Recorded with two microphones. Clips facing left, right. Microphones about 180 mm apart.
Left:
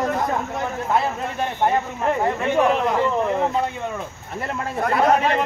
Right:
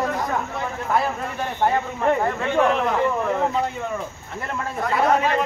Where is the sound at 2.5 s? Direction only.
15° left (ahead or behind).